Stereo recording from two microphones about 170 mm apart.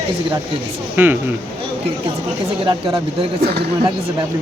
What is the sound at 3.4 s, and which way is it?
Speech, 70° right (ahead or behind).